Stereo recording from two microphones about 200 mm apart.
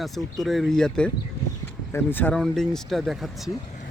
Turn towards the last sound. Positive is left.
turn(degrees=0)  # may be behind; listen again after turning